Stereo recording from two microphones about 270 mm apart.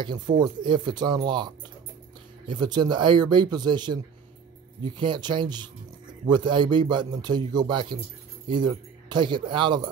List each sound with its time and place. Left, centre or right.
0.0 s a man's voice: centre